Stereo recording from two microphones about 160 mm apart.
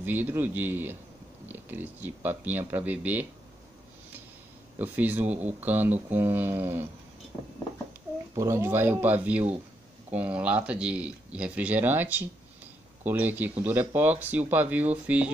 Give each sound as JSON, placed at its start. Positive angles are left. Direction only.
{"t": 0.0, "sound": "speech", "side_deg": -10}
{"t": 4.7, "sound": "speech", "side_deg": -10}
{"t": 8.4, "sound": "speech", "side_deg": -15}